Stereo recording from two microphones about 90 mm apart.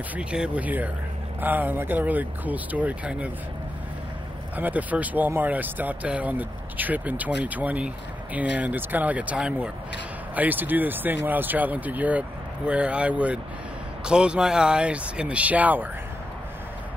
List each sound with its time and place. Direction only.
0.1 s speech: 10° right (ahead or behind)
4.6 s speech: 20° right (ahead or behind)